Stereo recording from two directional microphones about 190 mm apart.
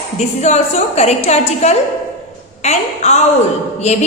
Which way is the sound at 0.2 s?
35° left (ahead or behind).